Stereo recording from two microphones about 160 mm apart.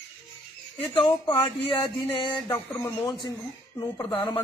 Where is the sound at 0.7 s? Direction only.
25° left (ahead or behind).